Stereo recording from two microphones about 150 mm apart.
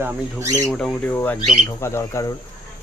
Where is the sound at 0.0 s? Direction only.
20° right (ahead or behind).